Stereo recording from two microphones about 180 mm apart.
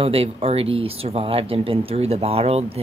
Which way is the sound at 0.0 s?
30° right (ahead or behind).